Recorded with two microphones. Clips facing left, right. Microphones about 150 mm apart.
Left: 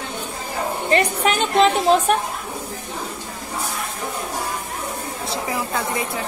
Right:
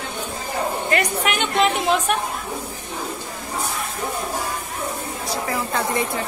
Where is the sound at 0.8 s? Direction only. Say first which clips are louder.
Left 6 dB; 30° left (ahead or behind).